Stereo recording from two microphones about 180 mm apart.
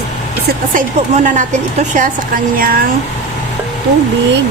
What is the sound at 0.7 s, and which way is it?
A woman's voice, 45° right (ahead or behind).